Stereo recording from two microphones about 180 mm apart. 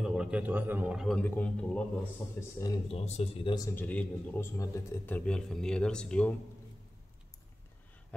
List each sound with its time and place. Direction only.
0.1 s a man's voice: 5° right (ahead or behind); by 2.7 s 15° left (ahead or behind)
2.9 s speech: 35° left (ahead or behind)
3.5 s a man's voice: 15° left (ahead or behind)